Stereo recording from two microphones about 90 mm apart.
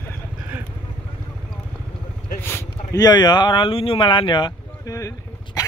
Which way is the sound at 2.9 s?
50° left (ahead or behind).